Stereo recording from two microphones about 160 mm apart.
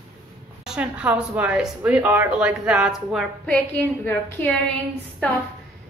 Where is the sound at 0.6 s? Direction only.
5° right (ahead or behind).